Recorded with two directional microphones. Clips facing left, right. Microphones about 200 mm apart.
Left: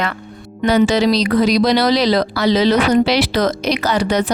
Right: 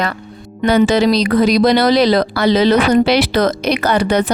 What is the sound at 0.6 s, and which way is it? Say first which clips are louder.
Speech: right 2 dB; 55° right (ahead or behind).